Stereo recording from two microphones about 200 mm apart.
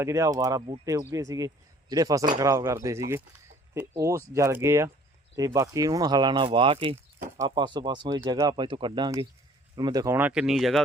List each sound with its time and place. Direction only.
0.0 s speech: 15° right (ahead or behind)